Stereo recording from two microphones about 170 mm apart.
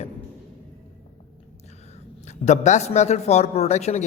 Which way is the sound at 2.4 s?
45° left (ahead or behind).